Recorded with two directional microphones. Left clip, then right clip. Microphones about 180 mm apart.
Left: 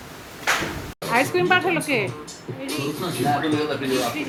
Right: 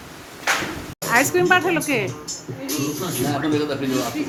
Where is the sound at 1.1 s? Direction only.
Centre (ahead or behind).